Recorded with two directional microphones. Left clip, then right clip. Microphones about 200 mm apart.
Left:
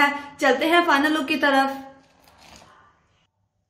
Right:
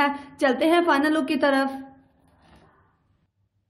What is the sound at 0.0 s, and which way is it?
A woman's voice, 50° right (ahead or behind).